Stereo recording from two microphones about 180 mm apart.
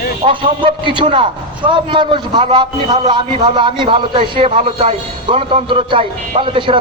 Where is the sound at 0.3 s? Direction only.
30° right (ahead or behind).